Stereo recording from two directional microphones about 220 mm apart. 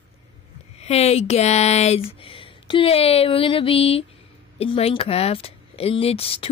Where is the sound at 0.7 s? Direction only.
30° left (ahead or behind).